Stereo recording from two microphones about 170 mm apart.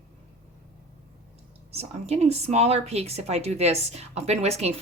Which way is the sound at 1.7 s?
40° right (ahead or behind).